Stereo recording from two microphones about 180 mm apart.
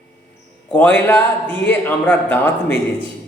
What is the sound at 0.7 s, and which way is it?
A man's voice, 10° left (ahead or behind).